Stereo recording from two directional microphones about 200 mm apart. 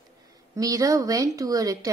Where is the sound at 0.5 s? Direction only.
15° right (ahead or behind).